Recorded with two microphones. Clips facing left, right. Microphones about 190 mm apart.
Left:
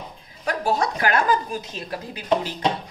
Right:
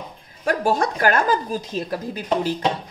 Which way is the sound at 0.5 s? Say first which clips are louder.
Right 3 dB; 50° right (ahead or behind).